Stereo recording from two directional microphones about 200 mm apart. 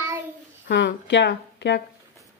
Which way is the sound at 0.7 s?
60° left (ahead or behind).